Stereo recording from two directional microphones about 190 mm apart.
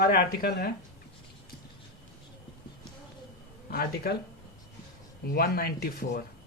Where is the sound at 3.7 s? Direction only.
55° left (ahead or behind).